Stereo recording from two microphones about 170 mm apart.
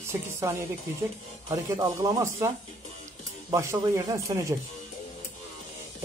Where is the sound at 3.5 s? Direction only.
20° right (ahead or behind).